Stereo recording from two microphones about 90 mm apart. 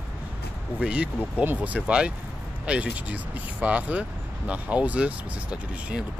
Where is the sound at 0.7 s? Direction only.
10° right (ahead or behind).